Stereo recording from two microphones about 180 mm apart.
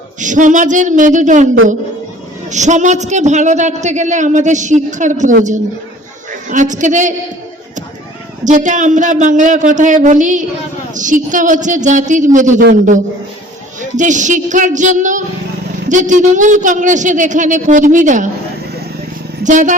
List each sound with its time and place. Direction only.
0.2 s speech: 45° right (ahead or behind)
2.5 s a man's voice: 40° right (ahead or behind)
8.4 s speech: 45° right (ahead or behind)
19.5 s speech: 45° right (ahead or behind)